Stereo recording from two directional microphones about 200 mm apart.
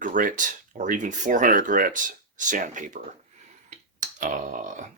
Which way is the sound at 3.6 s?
40° right (ahead or behind).